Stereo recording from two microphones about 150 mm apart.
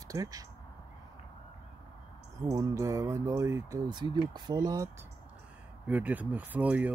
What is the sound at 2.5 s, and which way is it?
Speech, 20° right (ahead or behind).